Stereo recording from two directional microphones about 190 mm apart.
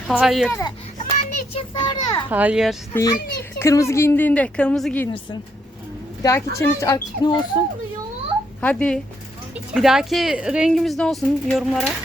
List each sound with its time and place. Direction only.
0.1 s speech: 5° right (ahead or behind)
0.9 s children playing: 35° left (ahead or behind)
2.3 s speech: 5° right (ahead or behind)
2.9 s a woman's voice: 20° left (ahead or behind)
6.2 s a woman's voice: 15° left (ahead or behind)
8.6 s a woman's voice: 5° left (ahead or behind)